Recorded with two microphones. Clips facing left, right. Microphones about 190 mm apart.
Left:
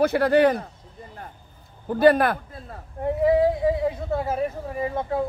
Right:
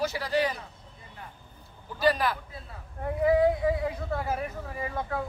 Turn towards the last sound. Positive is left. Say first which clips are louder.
# left 7 dB
turn(degrees=25)  # may be behind; listen again after turning